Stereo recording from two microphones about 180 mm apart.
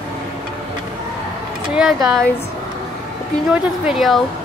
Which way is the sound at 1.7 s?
5° right (ahead or behind).